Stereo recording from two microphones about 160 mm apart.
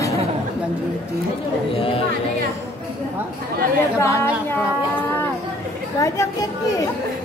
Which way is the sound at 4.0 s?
20° left (ahead or behind).